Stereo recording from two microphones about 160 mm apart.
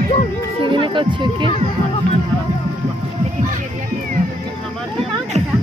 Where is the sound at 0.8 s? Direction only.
30° right (ahead or behind).